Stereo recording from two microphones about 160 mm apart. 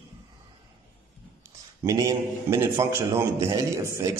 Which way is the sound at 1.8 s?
20° right (ahead or behind).